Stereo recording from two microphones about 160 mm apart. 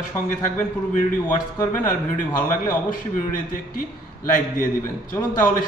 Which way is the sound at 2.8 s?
55° left (ahead or behind).